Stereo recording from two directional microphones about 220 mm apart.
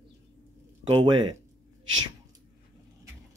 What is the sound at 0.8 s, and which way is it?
Speech, 20° right (ahead or behind).